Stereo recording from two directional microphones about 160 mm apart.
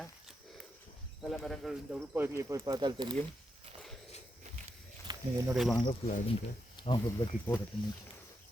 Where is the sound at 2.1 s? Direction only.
15° right (ahead or behind).